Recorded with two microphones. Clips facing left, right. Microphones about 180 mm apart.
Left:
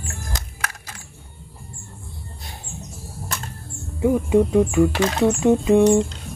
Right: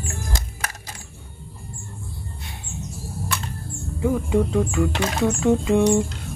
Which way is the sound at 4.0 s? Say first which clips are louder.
Left 4 dB; 20° left (ahead or behind).